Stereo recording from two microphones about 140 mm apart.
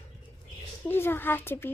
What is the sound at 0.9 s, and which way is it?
Speech, 15° left (ahead or behind).